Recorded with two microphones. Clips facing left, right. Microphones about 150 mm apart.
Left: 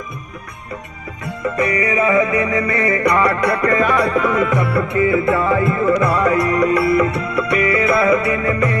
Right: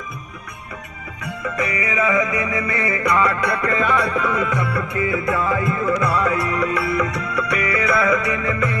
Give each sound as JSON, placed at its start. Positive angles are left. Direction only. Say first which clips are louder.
{"t": 1.8, "sound": "music", "louder": "left 4 dB", "side_deg": 35}
{"t": 2.6, "sound": "music", "louder": "left 5 dB", "side_deg": 60}
{"t": 3.1, "sound": "music", "louder": "left 1 dB", "side_deg": 45}
{"t": 6.9, "sound": "music", "louder": "left 5 dB", "side_deg": 30}